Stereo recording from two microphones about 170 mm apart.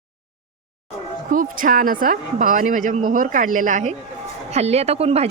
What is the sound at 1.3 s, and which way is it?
A woman's voice, 55° right (ahead or behind).